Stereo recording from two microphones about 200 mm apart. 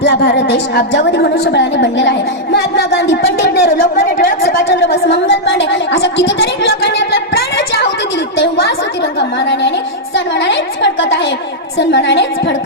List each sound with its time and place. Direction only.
0.0 s a woman's voice: 60° left (ahead or behind)
5.0 s a woman's voice: 60° left (ahead or behind)
8.4 s a sound: 55° left (ahead or behind)
10.4 s a woman's voice: 60° left (ahead or behind)